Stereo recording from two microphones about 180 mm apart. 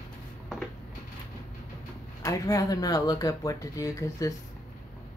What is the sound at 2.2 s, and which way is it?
Speech, 20° left (ahead or behind).